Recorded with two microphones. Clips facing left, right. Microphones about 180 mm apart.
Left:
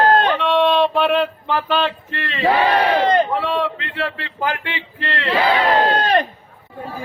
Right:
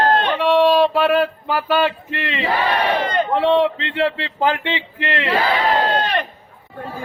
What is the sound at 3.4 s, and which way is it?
A man's voice, 25° right (ahead or behind).